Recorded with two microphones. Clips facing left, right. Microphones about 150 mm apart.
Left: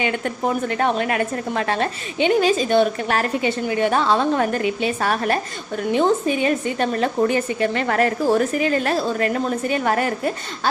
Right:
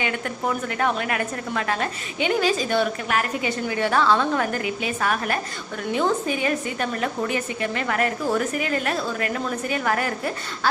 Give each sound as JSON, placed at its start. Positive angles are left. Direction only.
{"t": 0.0, "sound": "a woman's voice", "side_deg": 30}